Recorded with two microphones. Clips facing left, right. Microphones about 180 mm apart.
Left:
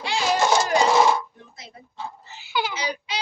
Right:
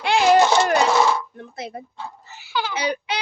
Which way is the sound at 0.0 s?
60° right (ahead or behind).